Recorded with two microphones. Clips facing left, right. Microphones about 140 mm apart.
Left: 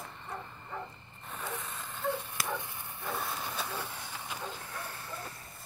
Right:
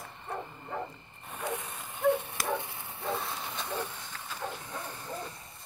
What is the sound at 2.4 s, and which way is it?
Bow-wow, 25° right (ahead or behind).